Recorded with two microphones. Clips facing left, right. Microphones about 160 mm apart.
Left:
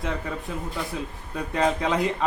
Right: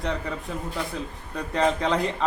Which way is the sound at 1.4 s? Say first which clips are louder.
Even; 5° left (ahead or behind).